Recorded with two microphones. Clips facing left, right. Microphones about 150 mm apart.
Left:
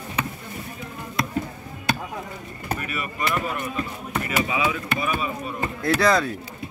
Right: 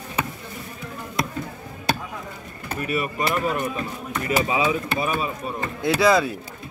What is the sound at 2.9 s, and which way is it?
Speech, 35° right (ahead or behind).